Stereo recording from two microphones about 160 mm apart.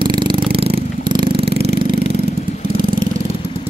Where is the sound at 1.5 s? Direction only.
90° right.